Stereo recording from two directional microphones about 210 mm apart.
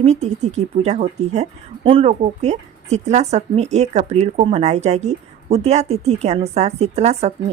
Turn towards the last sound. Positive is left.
turn(degrees=-30)  # may be behind; listen again after turning